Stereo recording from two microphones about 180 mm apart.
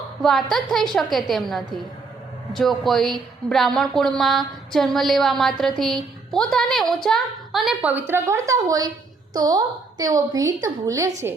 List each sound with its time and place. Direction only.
0.2 s a woman's voice: centre (ahead or behind); by 11.1 s 20° right (ahead or behind)